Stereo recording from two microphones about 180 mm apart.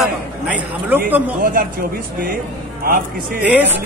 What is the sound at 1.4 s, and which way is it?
Speech, 50° right (ahead or behind).